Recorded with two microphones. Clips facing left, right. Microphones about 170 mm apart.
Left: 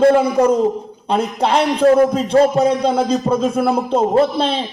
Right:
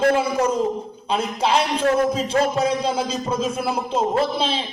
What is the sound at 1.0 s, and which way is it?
Music, 60° left (ahead or behind).